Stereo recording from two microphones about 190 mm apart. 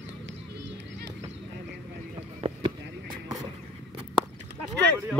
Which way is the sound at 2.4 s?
30° right (ahead or behind).